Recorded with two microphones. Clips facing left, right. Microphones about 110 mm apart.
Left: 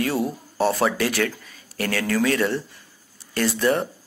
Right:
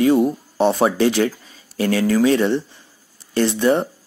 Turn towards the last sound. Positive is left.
turn(degrees=-20)  # may be behind; listen again after turning